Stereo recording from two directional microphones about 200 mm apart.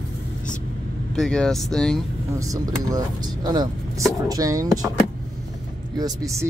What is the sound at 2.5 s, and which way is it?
Speech, 20° right (ahead or behind).